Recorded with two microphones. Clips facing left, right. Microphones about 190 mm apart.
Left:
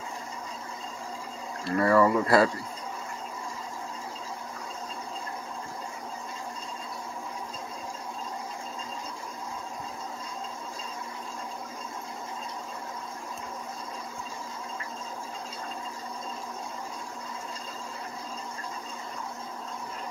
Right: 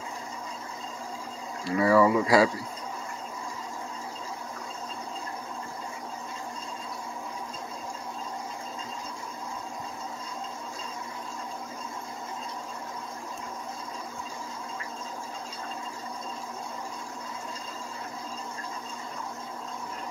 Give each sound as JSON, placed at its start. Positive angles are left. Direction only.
{"t": 1.6, "sound": "speech", "side_deg": -10}